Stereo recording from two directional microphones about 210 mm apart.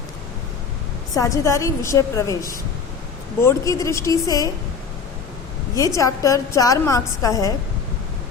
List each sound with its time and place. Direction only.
1.1 s a woman's voice: 15° left (ahead or behind)
5.7 s a woman's voice: 15° left (ahead or behind)